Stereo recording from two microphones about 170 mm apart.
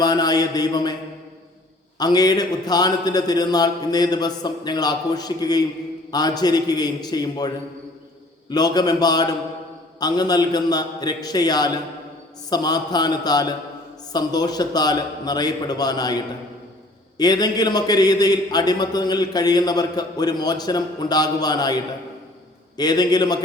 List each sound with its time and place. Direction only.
0.0 s a man's voice: 25° left (ahead or behind)
2.0 s a man's voice: 25° left (ahead or behind)
17.2 s a man's voice: 25° left (ahead or behind)
22.8 s a man's voice: 25° left (ahead or behind)